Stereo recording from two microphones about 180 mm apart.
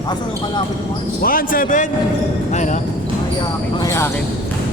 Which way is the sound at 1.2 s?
50° left (ahead or behind).